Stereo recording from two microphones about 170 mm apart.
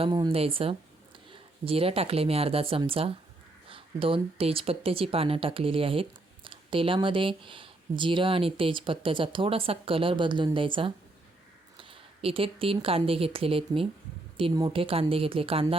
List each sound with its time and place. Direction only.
0.0 s speech: 30° right (ahead or behind)